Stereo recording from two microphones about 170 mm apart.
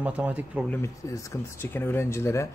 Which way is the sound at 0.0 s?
5° right (ahead or behind).